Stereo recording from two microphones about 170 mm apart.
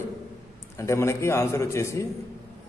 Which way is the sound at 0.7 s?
15° left (ahead or behind).